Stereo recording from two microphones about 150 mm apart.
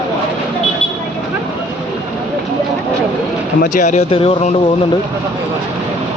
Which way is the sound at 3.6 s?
50° left (ahead or behind).